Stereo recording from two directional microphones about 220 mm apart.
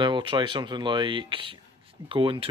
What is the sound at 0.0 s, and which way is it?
Speech, 20° right (ahead or behind).